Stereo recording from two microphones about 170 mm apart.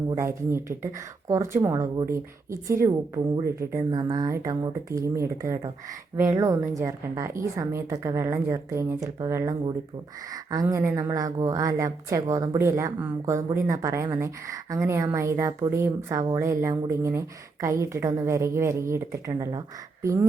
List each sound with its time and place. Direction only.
0.2 s a woman's voice: 15° right (ahead or behind)